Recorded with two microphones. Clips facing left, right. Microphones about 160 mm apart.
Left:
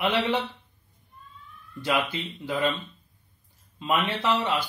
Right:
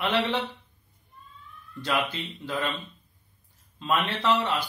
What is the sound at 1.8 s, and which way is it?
Speech, 10° left (ahead or behind).